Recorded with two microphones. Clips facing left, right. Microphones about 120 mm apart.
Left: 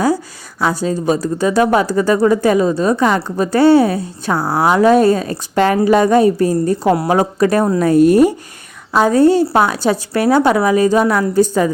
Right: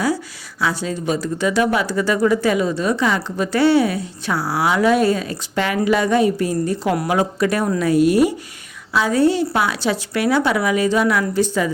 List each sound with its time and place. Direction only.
0.6 s a woman's voice: 45° left (ahead or behind)